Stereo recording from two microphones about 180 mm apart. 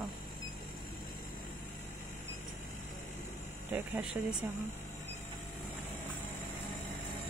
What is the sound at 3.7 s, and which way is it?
Speech, 10° right (ahead or behind).